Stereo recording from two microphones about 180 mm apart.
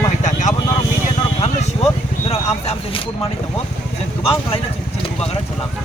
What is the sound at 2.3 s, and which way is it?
Speech, 35° left (ahead or behind).